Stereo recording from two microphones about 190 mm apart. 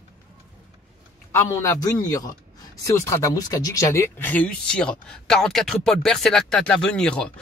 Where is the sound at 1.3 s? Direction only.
15° left (ahead or behind).